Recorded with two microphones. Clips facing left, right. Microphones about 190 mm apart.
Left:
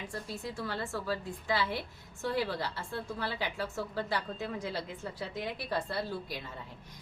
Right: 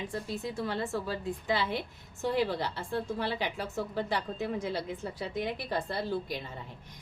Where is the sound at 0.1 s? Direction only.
20° right (ahead or behind).